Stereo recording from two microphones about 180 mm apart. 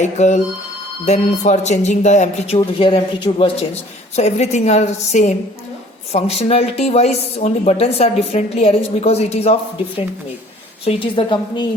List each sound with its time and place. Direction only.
0.0 s speech: 40° left (ahead or behind)
2.6 s speech: 30° left (ahead or behind)
10.8 s speech: 30° left (ahead or behind)